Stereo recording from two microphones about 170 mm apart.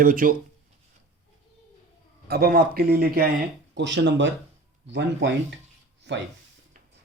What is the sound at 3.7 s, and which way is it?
Speech, 90° right.